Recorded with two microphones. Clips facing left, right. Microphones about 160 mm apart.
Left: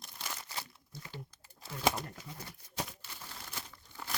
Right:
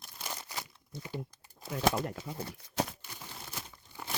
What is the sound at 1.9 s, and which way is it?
Pigeon, 90° right.